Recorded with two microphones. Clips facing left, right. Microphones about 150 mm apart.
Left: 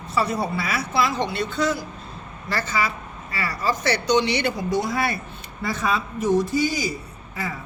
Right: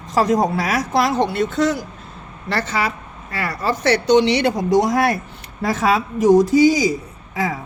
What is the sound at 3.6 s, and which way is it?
Speech, 65° right (ahead or behind).